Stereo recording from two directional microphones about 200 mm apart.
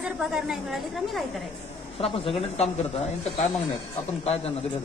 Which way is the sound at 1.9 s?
30° left (ahead or behind).